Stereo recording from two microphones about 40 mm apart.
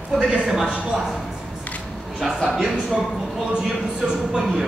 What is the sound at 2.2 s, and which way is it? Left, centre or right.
Speech, centre.